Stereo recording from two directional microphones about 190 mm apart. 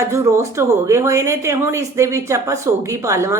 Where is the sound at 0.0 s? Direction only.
15° right (ahead or behind).